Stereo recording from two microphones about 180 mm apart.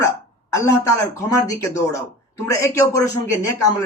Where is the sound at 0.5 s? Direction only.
15° left (ahead or behind).